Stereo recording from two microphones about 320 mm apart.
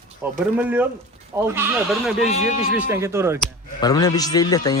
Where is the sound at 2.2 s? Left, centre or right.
Left.